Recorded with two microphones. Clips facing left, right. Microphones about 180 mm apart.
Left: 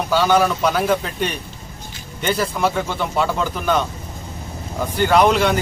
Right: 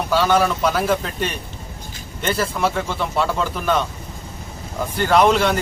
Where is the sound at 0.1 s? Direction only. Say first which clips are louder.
Left 1 dB; centre (ahead or behind).